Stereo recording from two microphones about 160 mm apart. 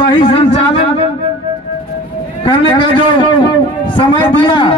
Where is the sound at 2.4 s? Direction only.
30° left (ahead or behind).